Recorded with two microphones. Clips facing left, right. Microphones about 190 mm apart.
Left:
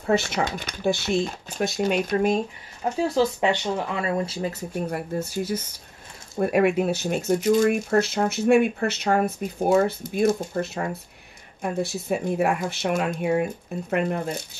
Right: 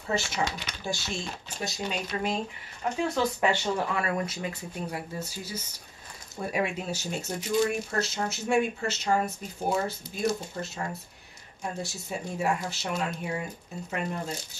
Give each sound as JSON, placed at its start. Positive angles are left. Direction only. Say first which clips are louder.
{"t": 0.0, "sound": "speech", "louder": "left 7 dB", "side_deg": 60}
{"t": 2.8, "sound": "speech", "louder": "left 4 dB", "side_deg": 35}
{"t": 3.3, "sound": "speech", "louder": "left 3 dB", "side_deg": 20}